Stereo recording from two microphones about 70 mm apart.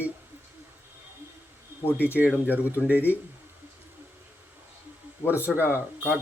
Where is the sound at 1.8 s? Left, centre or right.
Left.